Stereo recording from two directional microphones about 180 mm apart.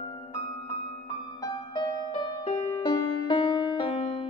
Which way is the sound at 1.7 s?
25° left (ahead or behind).